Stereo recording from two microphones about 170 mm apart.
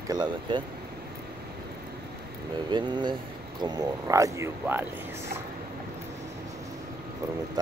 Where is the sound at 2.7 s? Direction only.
25° right (ahead or behind).